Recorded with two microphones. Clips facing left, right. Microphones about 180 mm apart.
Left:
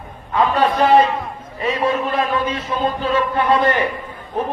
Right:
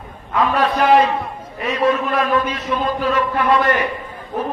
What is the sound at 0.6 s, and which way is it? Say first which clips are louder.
A man's voice: even; 30° left (ahead or behind).